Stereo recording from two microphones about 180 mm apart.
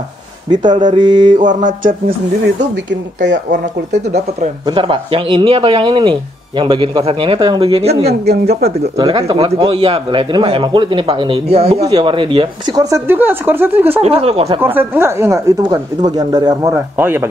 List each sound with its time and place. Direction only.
0.5 s speech: 25° right (ahead or behind)
1.4 s mantra: 45° right (ahead or behind)
3.2 s speech: 75° right (ahead or behind)
3.9 s speech: 40° right (ahead or behind)
4.6 s speech: 25° right (ahead or behind)
8.1 s a man's voice: 60° right (ahead or behind)
8.9 s speech: 25° right (ahead or behind)
12.9 s speech: 10° right (ahead or behind)
14.0 s speech: 35° right (ahead or behind)
14.6 s speech: 10° right (ahead or behind)